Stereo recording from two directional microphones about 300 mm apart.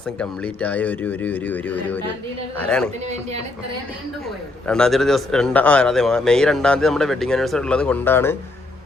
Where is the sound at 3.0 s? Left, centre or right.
Right.